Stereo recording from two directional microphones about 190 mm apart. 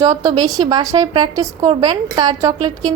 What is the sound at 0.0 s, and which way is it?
A woman's voice, 20° right (ahead or behind).